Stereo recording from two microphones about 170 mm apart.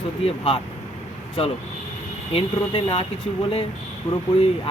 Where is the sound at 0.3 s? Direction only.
35° left (ahead or behind).